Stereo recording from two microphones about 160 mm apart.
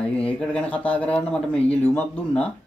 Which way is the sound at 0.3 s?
5° left (ahead or behind).